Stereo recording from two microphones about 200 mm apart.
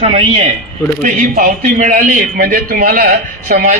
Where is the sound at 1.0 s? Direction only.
40° right (ahead or behind).